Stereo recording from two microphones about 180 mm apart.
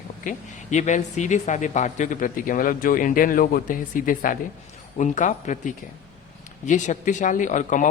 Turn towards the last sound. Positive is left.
turn(degrees=45)  # may be behind; listen again after turning